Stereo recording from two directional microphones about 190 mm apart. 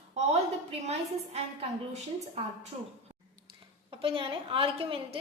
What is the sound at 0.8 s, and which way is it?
Speech, 35° right (ahead or behind).